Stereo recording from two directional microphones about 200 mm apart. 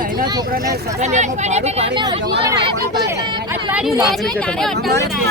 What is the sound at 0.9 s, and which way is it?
Speech, 35° right (ahead or behind).